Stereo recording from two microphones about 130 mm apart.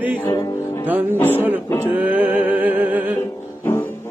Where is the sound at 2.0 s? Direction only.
10° right (ahead or behind).